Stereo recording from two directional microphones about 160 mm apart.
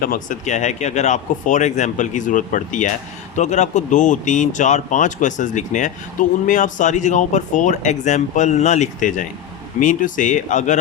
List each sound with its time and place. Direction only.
0.0 s speech: 60° left (ahead or behind)